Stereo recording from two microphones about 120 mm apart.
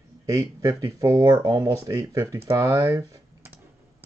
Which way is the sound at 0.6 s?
25° right (ahead or behind).